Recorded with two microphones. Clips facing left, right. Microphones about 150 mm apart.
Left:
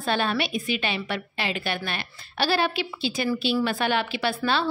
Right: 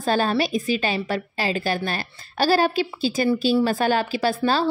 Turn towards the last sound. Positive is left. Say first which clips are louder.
# right 4 dB
turn(degrees=-40)  # may be behind; listen again after turning